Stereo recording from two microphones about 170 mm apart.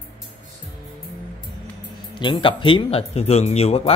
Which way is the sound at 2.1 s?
30° left (ahead or behind).